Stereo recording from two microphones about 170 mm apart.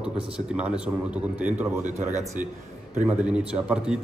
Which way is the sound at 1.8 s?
45° right (ahead or behind).